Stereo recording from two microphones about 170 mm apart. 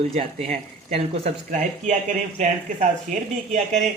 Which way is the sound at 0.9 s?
40° right (ahead or behind).